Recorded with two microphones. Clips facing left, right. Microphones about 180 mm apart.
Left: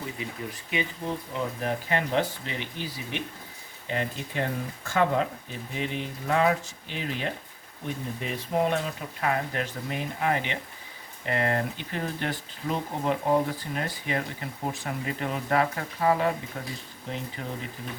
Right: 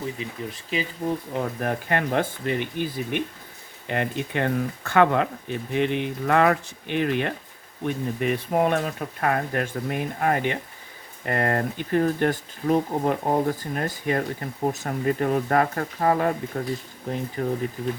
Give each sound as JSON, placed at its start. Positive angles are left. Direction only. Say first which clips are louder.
{"t": 0.5, "sound": "speech", "louder": "right 2 dB", "side_deg": -35}
{"t": 1.3, "sound": "speech", "louder": "right 3 dB", "side_deg": -55}